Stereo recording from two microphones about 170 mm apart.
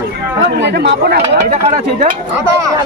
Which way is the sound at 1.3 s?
45° right (ahead or behind).